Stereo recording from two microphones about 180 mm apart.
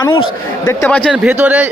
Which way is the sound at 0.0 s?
30° left (ahead or behind).